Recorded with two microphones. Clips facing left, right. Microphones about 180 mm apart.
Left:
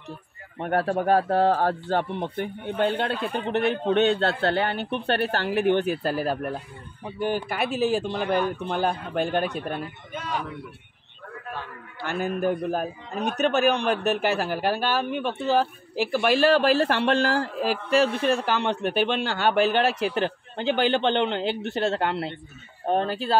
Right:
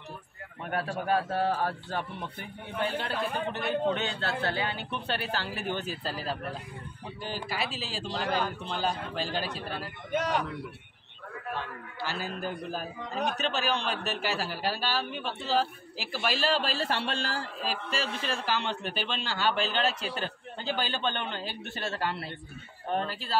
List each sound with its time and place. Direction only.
0.6 s a man's voice: 60° left (ahead or behind)
9.8 s speech: 80° right
12.0 s speech: 60° left (ahead or behind)